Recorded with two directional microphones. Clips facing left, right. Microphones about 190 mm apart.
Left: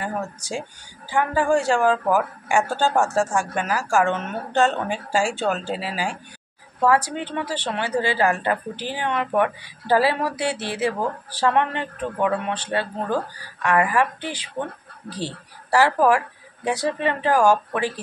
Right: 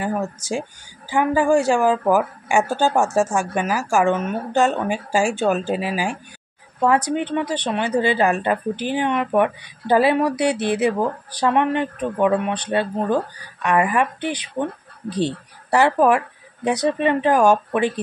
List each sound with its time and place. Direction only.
1.1 s a woman's voice: 15° right (ahead or behind)